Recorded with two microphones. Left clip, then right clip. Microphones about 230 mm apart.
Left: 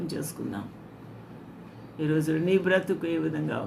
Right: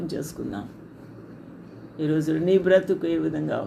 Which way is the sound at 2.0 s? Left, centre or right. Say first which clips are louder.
Right 3 dB; centre.